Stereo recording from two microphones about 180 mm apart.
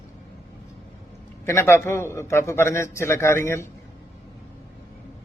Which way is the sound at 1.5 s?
15° left (ahead or behind).